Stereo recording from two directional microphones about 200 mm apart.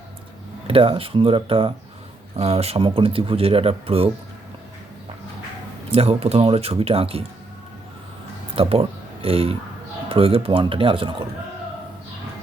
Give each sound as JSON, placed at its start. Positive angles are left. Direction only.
{"t": 0.7, "sound": "speech", "side_deg": -25}
{"t": 5.9, "sound": "speech", "side_deg": -30}
{"t": 8.5, "sound": "speech", "side_deg": -30}